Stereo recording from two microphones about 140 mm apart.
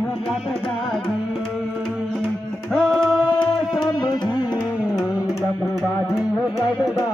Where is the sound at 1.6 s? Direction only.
Centre (ahead or behind).